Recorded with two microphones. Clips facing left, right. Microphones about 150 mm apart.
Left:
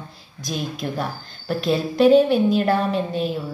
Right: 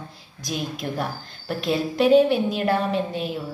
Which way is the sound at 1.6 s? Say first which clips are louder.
Left 4 dB; 15° right (ahead or behind).